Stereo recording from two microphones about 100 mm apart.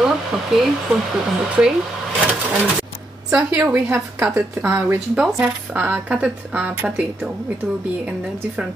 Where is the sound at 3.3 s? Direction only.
15° right (ahead or behind).